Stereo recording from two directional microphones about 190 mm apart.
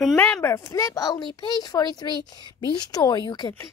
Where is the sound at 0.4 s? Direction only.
15° left (ahead or behind).